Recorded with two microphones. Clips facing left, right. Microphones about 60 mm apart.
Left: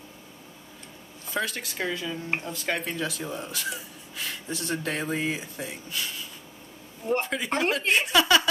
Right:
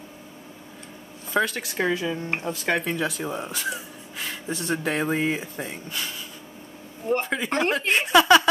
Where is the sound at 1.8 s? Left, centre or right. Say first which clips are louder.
Right 6 dB; centre.